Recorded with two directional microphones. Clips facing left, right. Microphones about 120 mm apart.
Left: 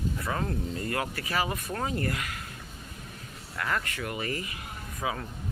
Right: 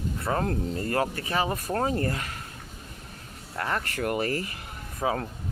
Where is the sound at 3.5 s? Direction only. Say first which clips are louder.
Right 2 dB; 30° right (ahead or behind).